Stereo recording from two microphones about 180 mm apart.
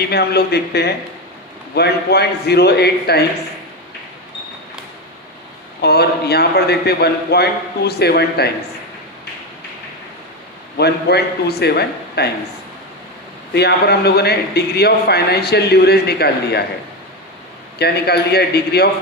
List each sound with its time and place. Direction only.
0.0 s a man's voice: 65° left (ahead or behind)
5.8 s a man's voice: 65° left (ahead or behind)
10.8 s a man's voice: 65° left (ahead or behind)
13.5 s a man's voice: 65° left (ahead or behind)
17.7 s a man's voice: 65° left (ahead or behind)